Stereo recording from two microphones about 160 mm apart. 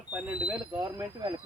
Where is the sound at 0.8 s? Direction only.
25° right (ahead or behind).